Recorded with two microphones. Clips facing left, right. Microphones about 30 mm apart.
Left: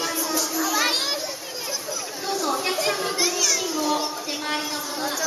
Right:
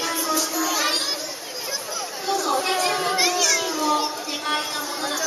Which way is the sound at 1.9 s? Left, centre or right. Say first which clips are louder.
Right 4 dB; centre.